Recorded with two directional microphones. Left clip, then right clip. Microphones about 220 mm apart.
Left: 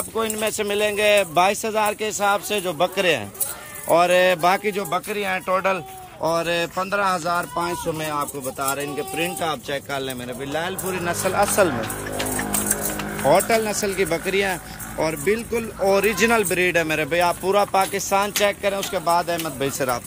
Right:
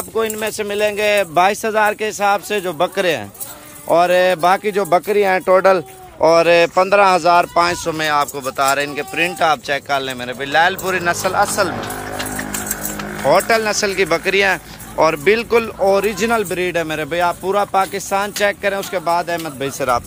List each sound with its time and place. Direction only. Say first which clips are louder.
0.1 s speech: right 5 dB; 5° right (ahead or behind)
4.8 s speech: right 10 dB; 25° right (ahead or behind)
6.2 s speech: right 11 dB; 10° right (ahead or behind)
7.7 s speech: right 8 dB; centre (ahead or behind)
13.2 s speech: right 4 dB; 5° left (ahead or behind)